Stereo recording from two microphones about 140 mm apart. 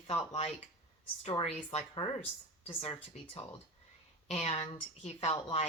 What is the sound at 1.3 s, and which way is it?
Speech, 40° left (ahead or behind).